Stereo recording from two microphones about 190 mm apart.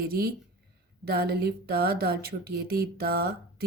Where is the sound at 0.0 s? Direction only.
50° right (ahead or behind).